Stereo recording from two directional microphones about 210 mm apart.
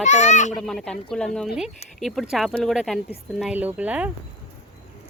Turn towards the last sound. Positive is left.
turn(degrees=-5)  # may be behind; listen again after turning